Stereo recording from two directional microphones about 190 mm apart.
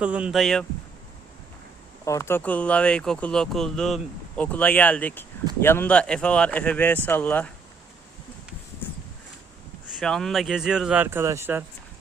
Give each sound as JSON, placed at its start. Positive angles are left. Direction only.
{"t": 0.0, "sound": "speech", "side_deg": -5}
{"t": 2.0, "sound": "speech", "side_deg": 15}
{"t": 8.8, "sound": "a sound", "side_deg": 10}
{"t": 10.0, "sound": "speech", "side_deg": 0}